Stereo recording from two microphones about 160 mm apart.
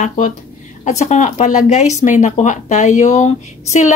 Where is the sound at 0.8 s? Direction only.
45° left (ahead or behind).